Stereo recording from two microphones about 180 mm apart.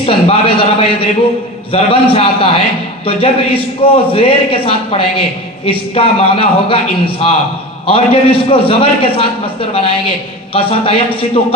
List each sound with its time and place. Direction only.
0.0 s a man's voice: 30° left (ahead or behind)
10.5 s a woman's voice: 30° left (ahead or behind)